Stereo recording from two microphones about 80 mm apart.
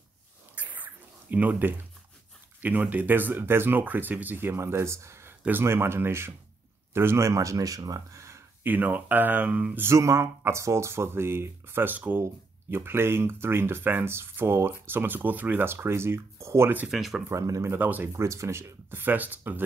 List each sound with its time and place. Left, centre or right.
0.6 s a sound: right
1.3 s speech: centre; by 8.4 s right
8.6 s speech: right
9.8 s speech: right
16.8 s speech: centre
17.3 s speech: right
17.7 s speech: right
18.1 s speech: right